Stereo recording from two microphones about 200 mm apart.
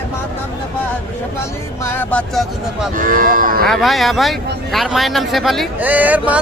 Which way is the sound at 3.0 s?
45° right (ahead or behind).